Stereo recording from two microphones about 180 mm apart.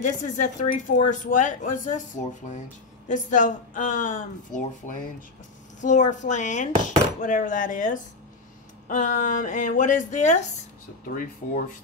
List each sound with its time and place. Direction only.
0.0 s speech: 45° left (ahead or behind)
6.7 s chopping: 35° right (ahead or behind)
7.2 s speech: 45° left (ahead or behind)